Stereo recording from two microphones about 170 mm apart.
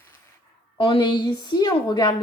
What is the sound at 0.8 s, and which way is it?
A woman's voice, 30° left (ahead or behind).